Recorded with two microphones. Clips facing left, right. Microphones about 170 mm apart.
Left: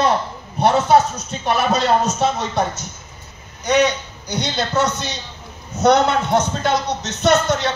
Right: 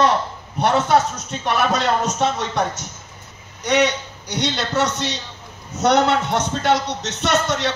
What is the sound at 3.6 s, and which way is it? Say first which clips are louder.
A man's voice: left 2 dB; 80° right.